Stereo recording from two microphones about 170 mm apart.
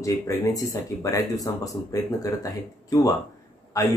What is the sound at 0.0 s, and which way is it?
Speech, 20° left (ahead or behind).